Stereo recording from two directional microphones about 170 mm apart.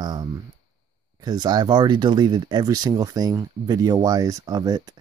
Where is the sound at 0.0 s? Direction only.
25° right (ahead or behind).